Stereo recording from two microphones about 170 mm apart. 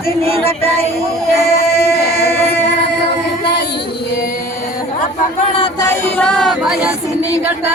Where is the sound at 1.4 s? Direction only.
65° left (ahead or behind).